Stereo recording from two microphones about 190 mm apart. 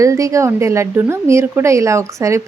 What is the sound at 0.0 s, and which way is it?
Speech, 15° right (ahead or behind).